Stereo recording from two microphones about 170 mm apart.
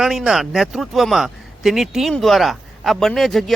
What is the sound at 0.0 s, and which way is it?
Speech, centre (ahead or behind).